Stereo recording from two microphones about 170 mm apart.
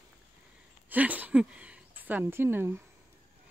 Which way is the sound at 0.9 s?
10° right (ahead or behind).